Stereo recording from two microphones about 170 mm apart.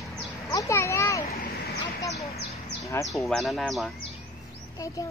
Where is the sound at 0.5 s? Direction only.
15° left (ahead or behind).